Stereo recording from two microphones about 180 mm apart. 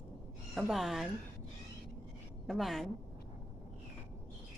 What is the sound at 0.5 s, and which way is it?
Speech, centre (ahead or behind).